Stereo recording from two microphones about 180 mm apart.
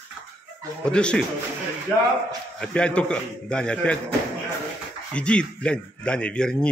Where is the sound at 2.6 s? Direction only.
5° left (ahead or behind).